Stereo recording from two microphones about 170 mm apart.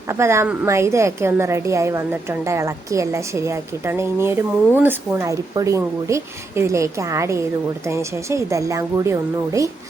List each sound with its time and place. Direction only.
0.1 s a woman's voice: 15° right (ahead or behind)